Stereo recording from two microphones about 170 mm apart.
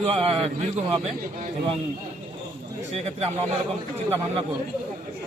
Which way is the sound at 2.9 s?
35° right (ahead or behind).